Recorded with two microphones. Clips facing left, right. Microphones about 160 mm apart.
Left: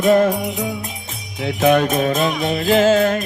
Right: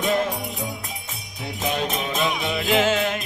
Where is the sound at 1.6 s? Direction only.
60° left (ahead or behind); by 3.2 s 40° left (ahead or behind).